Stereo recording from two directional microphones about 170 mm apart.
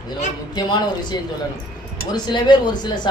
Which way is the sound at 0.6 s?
25° left (ahead or behind).